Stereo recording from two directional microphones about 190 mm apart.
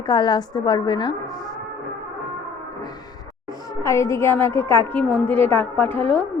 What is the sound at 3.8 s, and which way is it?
A woman's voice, 15° left (ahead or behind).